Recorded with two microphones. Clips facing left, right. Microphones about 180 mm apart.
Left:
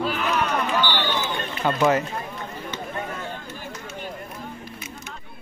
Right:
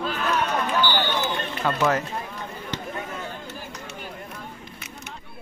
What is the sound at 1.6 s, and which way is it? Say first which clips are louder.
Speech: left 2 dB; centre (ahead or behind).